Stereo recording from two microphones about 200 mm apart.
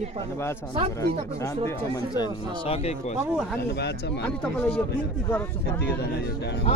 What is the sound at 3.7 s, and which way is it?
Speech, 55° left (ahead or behind).